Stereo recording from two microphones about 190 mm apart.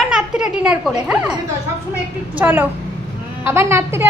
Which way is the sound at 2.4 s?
10° right (ahead or behind).